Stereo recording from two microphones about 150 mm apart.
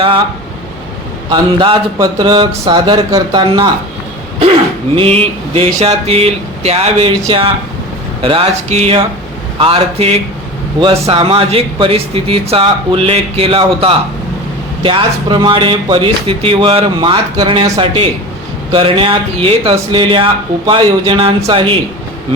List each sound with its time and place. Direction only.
1.3 s speech: 35° right (ahead or behind)
4.9 s speech: 40° right (ahead or behind)